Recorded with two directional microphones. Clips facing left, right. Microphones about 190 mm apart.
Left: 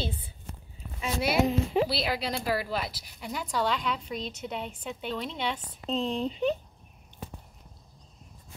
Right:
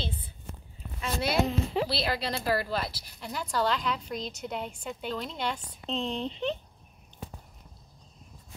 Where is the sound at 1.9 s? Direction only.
Centre (ahead or behind).